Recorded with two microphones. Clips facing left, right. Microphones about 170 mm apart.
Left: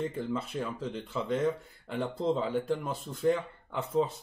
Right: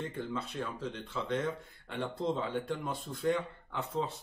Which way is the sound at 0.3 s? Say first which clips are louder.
Left 4 dB; 10° left (ahead or behind).